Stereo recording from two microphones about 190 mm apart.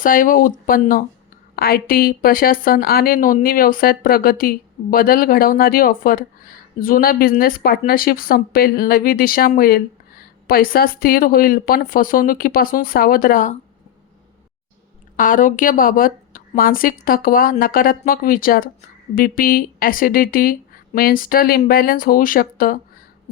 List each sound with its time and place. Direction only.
0.0 s speech: 45° left (ahead or behind)
15.1 s speech: 45° left (ahead or behind)